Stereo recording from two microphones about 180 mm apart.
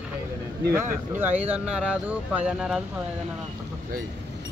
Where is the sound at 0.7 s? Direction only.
10° right (ahead or behind).